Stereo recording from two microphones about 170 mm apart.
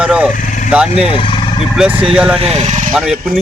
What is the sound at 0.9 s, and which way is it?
Speech, 35° left (ahead or behind).